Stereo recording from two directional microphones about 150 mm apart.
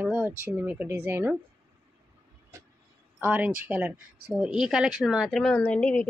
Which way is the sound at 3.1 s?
10° right (ahead or behind).